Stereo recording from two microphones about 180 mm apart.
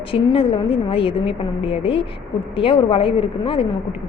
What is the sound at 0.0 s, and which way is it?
A woman's voice, 30° left (ahead or behind).